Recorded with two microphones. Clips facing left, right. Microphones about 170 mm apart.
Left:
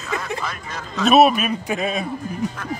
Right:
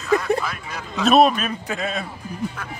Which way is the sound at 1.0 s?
5° left (ahead or behind).